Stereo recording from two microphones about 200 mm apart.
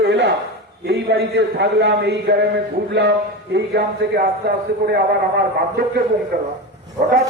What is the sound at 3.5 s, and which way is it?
Speech, 55° right (ahead or behind).